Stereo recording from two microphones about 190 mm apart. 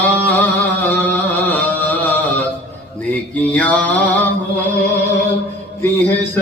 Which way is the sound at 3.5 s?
10° left (ahead or behind).